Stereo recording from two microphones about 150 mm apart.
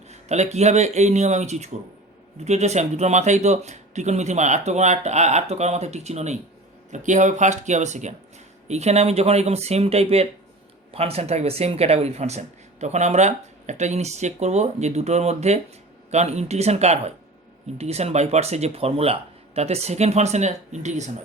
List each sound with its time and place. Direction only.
0.1 s speech: 50° right (ahead or behind)